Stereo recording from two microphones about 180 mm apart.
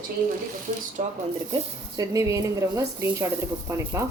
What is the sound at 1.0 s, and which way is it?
Speech, 50° right (ahead or behind).